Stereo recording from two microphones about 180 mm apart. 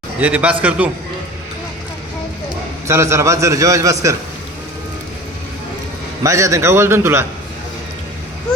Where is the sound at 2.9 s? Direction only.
15° right (ahead or behind).